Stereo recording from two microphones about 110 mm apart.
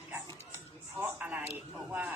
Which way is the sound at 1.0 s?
15° right (ahead or behind).